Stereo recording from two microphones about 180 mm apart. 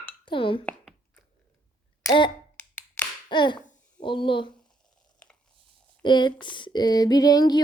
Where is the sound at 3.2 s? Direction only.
25° left (ahead or behind).